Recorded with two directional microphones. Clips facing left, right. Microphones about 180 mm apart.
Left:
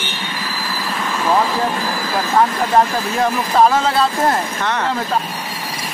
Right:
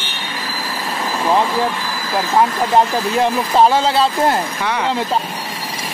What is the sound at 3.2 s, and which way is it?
Speech, 25° right (ahead or behind).